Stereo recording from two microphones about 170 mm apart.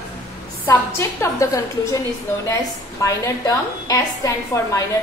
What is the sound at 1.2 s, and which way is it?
Speech, 20° left (ahead or behind).